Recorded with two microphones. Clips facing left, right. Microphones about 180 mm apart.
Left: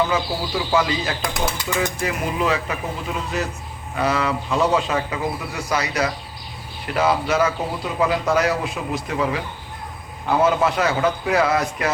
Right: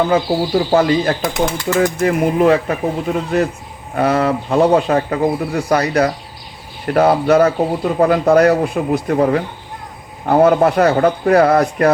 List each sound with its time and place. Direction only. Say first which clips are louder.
0.0 s speech: right 7 dB; 55° right (ahead or behind)